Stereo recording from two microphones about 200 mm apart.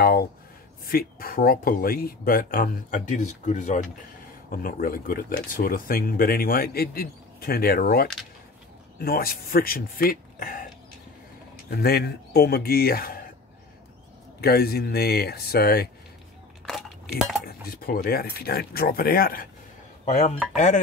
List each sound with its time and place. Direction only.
0.0 s a sound: 50° left (ahead or behind)
0.8 s speech: 45° left (ahead or behind)
11.7 s speech: 50° left (ahead or behind)
14.4 s speech: 50° left (ahead or behind)
16.6 s a sound: centre (ahead or behind)
17.5 s speech: 50° left (ahead or behind)